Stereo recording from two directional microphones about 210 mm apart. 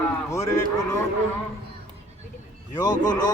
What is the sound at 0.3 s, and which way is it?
Speech, 15° left (ahead or behind).